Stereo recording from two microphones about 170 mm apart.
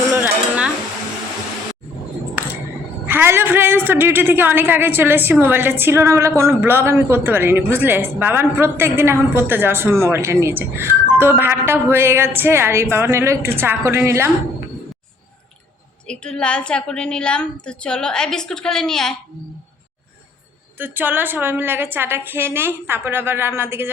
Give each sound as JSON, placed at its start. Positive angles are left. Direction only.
{"t": 0.1, "sound": "dishes", "side_deg": -10}
{"t": 3.1, "sound": "a woman's voice", "side_deg": -15}
{"t": 16.0, "sound": "a woman's voice", "side_deg": 5}
{"t": 20.7, "sound": "a woman's voice", "side_deg": -10}